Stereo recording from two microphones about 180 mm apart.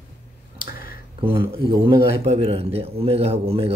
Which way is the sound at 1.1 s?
30° right (ahead or behind).